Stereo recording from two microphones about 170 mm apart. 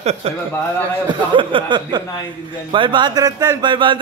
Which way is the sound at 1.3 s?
30° right (ahead or behind).